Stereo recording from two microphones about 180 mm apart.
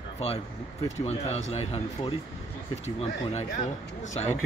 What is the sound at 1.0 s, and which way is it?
A man's voice, 35° left (ahead or behind).